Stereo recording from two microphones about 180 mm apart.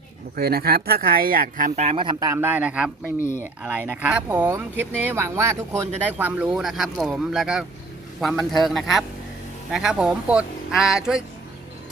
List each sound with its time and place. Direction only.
0.3 s speech: 60° right (ahead or behind); by 2.9 s 5° right (ahead or behind)
3.2 s speech: 15° left (ahead or behind)
3.4 s speech: 10° right (ahead or behind)